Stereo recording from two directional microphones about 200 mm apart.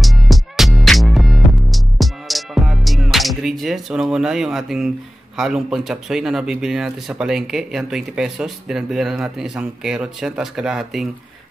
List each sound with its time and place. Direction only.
0.0 s music: centre (ahead or behind)
5.4 s speech: centre (ahead or behind)